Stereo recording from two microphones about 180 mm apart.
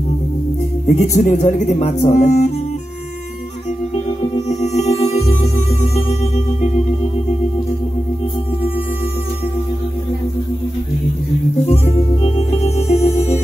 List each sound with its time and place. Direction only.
0.8 s speech: 40° left (ahead or behind)
4.5 s music: 35° left (ahead or behind)
11.6 s music: 35° left (ahead or behind)